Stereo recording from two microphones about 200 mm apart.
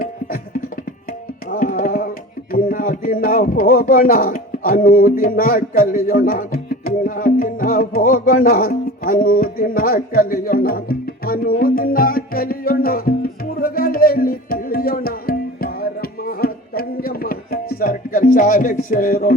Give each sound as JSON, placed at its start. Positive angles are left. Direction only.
{"t": 0.0, "sound": "music", "side_deg": 45}
{"t": 1.5, "sound": "tabla", "side_deg": 45}
{"t": 2.5, "sound": "a sound", "side_deg": 45}